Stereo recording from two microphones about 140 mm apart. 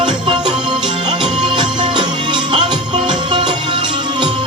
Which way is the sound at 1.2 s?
35° right (ahead or behind).